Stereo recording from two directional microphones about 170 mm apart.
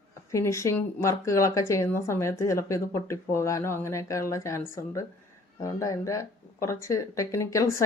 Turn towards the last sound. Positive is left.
turn(degrees=20)  # may be behind; listen again after turning